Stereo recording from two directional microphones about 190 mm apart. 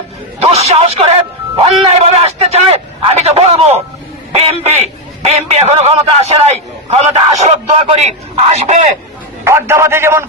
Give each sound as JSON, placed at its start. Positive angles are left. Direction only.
{"t": 0.4, "sound": "a man's voice", "side_deg": -35}
{"t": 9.4, "sound": "a man's voice", "side_deg": -15}